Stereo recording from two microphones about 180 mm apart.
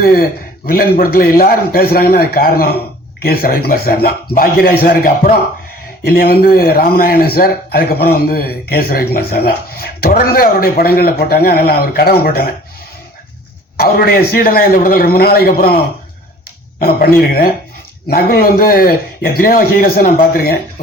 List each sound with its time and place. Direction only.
0.0 s a man's voice: 55° left (ahead or behind)
13.7 s a man's voice: 55° left (ahead or behind)
17.2 s a man's voice: 55° left (ahead or behind)